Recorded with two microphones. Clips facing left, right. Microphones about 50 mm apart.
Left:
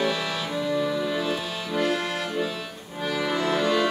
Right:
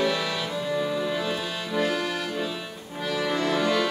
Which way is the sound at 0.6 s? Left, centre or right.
Centre.